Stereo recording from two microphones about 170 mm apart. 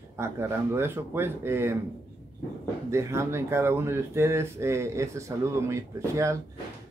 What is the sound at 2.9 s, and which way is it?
A man's voice, 15° right (ahead or behind).